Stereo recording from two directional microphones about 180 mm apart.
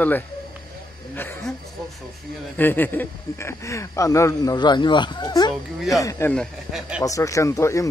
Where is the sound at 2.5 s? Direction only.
10° left (ahead or behind).